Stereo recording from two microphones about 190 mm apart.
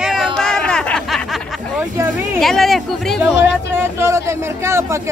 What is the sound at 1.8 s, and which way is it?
Speech, 15° right (ahead or behind).